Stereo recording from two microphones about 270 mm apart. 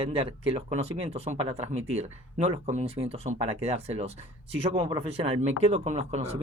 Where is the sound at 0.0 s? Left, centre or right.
Centre.